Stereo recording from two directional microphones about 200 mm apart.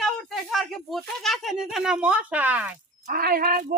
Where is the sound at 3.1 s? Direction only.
50° right (ahead or behind).